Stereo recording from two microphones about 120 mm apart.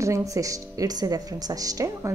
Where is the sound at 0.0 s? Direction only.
25° right (ahead or behind).